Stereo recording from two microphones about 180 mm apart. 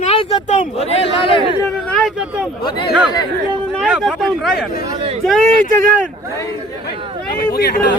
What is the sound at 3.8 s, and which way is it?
Speech, centre (ahead or behind).